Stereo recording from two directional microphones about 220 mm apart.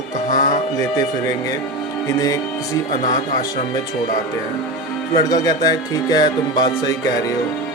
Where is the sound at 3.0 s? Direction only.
35° left (ahead or behind).